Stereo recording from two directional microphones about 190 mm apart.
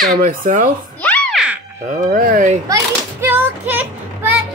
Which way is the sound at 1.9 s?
45° right (ahead or behind).